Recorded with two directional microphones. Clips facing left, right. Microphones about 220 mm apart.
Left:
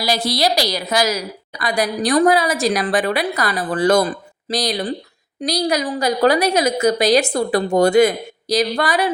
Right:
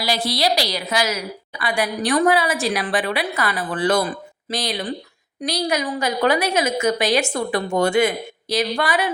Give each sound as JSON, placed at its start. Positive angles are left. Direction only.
{"t": 0.0, "sound": "a woman's voice", "side_deg": 40}